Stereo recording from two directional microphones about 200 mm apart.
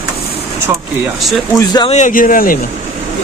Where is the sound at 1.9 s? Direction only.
40° left (ahead or behind).